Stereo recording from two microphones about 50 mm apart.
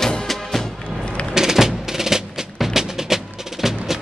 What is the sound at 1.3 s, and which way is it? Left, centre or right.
Music, centre.